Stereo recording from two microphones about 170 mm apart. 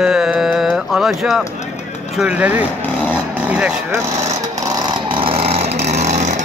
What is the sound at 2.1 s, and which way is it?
Speech, 10° right (ahead or behind).